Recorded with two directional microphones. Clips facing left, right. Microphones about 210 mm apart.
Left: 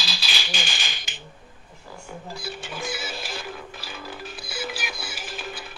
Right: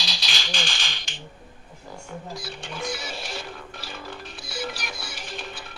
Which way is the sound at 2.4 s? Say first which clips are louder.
Left 3 dB; 5° left (ahead or behind).